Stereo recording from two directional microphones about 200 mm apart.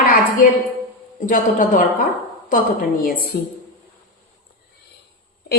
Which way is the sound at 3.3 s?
55° left (ahead or behind).